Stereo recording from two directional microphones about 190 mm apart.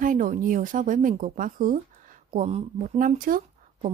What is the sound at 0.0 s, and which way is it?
Speech, 45° right (ahead or behind).